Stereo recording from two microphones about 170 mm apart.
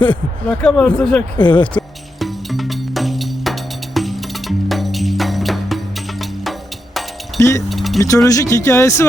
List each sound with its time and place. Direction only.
0.4 s speech: 5° left (ahead or behind)
2.1 s music: centre (ahead or behind)
7.3 s music: 20° left (ahead or behind)
7.7 s a sound: centre (ahead or behind)
8.0 s speech: 20° left (ahead or behind)